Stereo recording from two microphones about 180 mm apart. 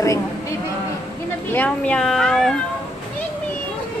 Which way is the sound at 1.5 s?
10° left (ahead or behind).